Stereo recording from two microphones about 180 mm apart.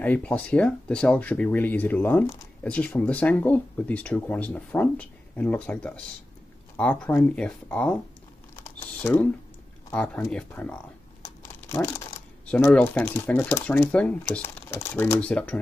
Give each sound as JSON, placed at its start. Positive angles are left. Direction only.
{"t": 0.0, "sound": "speech", "side_deg": 10}
{"t": 9.0, "sound": "speech", "side_deg": 10}
{"t": 11.2, "sound": "crumpling", "side_deg": 15}
{"t": 12.4, "sound": "speech", "side_deg": 5}